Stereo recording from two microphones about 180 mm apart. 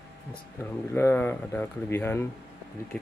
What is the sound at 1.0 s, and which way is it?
Speech, 10° left (ahead or behind).